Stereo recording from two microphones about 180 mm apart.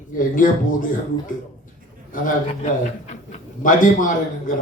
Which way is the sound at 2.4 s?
40° left (ahead or behind).